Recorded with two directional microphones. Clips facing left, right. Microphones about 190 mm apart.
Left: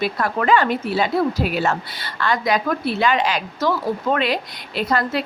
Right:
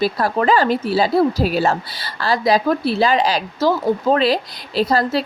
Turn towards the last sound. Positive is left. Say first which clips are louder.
# right 4 dB
turn(degrees=-35)  # may be behind; listen again after turning